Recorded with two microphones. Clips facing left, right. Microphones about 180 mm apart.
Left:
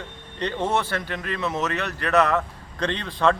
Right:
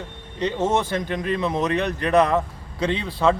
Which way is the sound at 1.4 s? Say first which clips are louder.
Right 2 dB; 30° right (ahead or behind).